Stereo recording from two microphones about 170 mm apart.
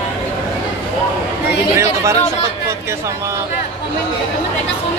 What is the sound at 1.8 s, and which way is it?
Speech, 15° right (ahead or behind).